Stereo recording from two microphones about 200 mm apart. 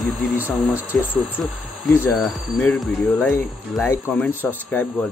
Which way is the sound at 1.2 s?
10° left (ahead or behind).